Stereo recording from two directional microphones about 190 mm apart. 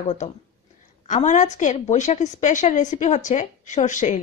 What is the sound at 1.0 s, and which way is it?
Speech, 40° left (ahead or behind).